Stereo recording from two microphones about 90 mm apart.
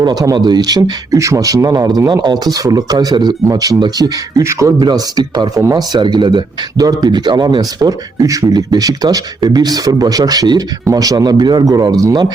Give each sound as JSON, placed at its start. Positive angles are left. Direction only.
{"t": 0.0, "sound": "speech", "side_deg": -45}